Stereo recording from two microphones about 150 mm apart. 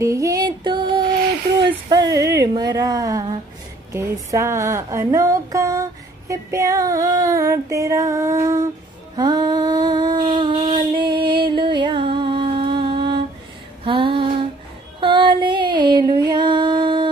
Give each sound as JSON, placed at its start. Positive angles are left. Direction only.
{"t": 0.0, "sound": "music", "side_deg": -20}
{"t": 1.6, "sound": "a sound", "side_deg": -25}
{"t": 3.9, "sound": "speech", "side_deg": -20}
{"t": 9.1, "sound": "a sound", "side_deg": -25}
{"t": 13.8, "sound": "female singing", "side_deg": -35}
{"t": 15.0, "sound": "music", "side_deg": -35}